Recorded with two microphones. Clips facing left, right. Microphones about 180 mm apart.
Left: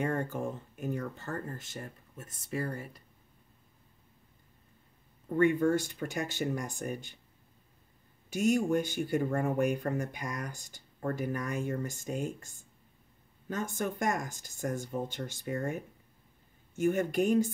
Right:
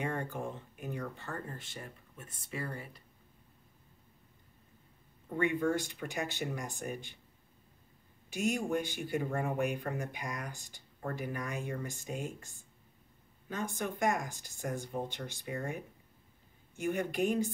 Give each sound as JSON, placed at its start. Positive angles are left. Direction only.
{"t": 0.0, "sound": "speech", "side_deg": 45}
{"t": 5.4, "sound": "speech", "side_deg": 45}
{"t": 8.3, "sound": "speech", "side_deg": 45}
{"t": 13.5, "sound": "speech", "side_deg": 45}